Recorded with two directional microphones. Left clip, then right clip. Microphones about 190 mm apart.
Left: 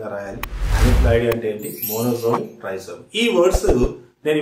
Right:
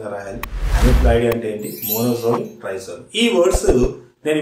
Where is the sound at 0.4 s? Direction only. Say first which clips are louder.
Right 1 dB; centre (ahead or behind).